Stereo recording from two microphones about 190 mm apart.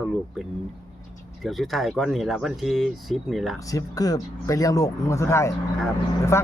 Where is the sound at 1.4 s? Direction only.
Centre (ahead or behind).